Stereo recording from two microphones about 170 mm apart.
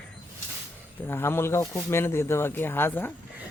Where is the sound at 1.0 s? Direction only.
15° left (ahead or behind).